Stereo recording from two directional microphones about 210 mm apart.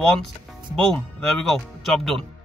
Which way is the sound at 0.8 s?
Centre (ahead or behind).